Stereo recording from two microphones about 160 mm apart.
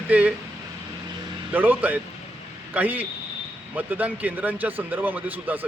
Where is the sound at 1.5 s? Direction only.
10° right (ahead or behind).